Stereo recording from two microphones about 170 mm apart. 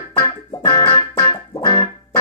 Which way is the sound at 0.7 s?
15° left (ahead or behind).